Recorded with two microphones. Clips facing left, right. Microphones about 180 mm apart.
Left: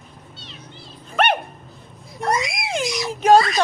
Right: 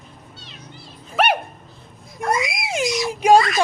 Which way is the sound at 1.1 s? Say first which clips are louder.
Even; 5° right (ahead or behind).